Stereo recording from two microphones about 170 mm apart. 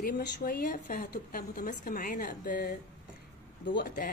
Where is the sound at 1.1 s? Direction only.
60° left (ahead or behind).